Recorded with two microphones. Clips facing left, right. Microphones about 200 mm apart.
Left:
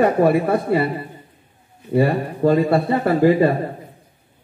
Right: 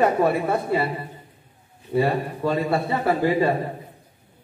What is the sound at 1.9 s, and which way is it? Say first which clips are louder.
A man's voice: left 4 dB; 50° left (ahead or behind).